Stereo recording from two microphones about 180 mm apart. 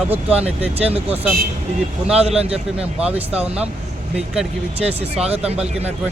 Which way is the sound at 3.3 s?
35° right (ahead or behind).